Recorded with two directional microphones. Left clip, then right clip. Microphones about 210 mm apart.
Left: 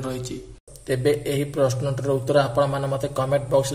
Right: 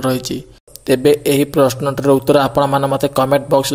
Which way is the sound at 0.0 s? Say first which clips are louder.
Right 12 dB; 40° right (ahead or behind).